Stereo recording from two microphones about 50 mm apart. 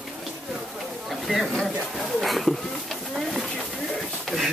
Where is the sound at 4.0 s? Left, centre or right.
Centre.